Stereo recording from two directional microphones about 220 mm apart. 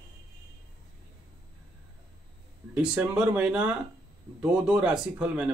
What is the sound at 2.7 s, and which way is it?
Speech, 5° right (ahead or behind).